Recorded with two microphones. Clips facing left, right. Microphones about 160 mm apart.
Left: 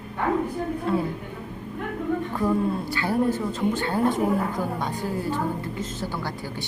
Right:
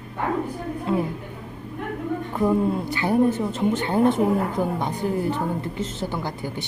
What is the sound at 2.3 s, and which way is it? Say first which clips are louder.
Speech: right 5 dB; 20° right (ahead or behind).